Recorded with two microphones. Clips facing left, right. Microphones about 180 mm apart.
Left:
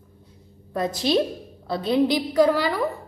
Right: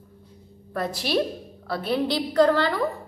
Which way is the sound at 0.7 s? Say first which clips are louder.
Left 3 dB; 20° left (ahead or behind).